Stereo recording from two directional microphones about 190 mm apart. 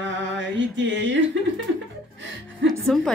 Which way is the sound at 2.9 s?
5° left (ahead or behind).